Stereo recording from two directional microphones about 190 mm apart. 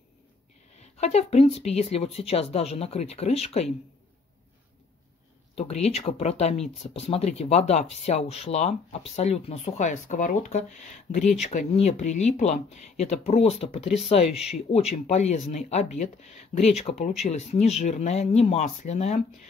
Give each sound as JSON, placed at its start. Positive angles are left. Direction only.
{"t": 0.7, "sound": "speech", "side_deg": 35}
{"t": 5.6, "sound": "speech", "side_deg": 35}